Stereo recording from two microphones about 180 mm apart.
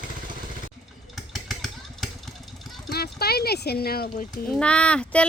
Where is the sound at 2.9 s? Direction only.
60° left (ahead or behind).